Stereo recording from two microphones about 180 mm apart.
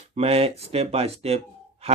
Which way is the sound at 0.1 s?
35° right (ahead or behind).